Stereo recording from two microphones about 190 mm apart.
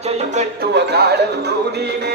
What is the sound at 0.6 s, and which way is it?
Speech, 60° right (ahead or behind).